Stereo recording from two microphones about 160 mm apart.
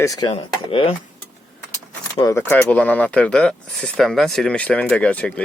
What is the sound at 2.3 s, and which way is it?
Speech, 10° left (ahead or behind).